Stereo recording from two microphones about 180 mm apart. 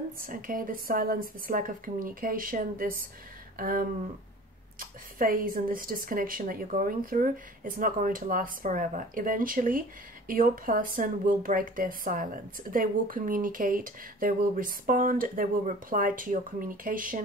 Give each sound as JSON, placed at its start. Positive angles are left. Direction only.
{"t": 0.2, "sound": "speech", "side_deg": -50}
{"t": 3.5, "sound": "a sound", "side_deg": -50}
{"t": 4.7, "sound": "speech", "side_deg": -50}